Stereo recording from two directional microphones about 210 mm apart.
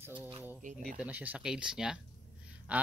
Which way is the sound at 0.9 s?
5° right (ahead or behind).